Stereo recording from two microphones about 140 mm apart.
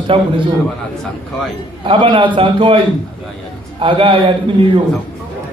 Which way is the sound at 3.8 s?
35° right (ahead or behind).